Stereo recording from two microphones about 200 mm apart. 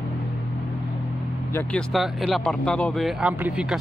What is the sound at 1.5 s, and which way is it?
Speech, 5° left (ahead or behind).